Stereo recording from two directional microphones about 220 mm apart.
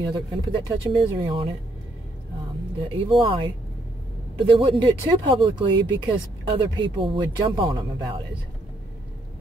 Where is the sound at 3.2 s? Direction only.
25° right (ahead or behind).